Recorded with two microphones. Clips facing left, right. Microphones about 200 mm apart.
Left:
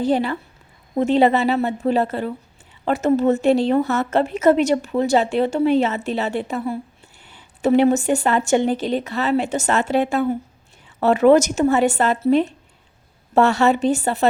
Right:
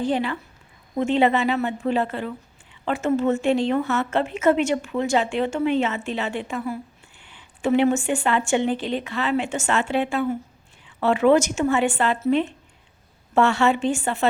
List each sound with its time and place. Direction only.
0.0 s a woman's voice: 40° left (ahead or behind)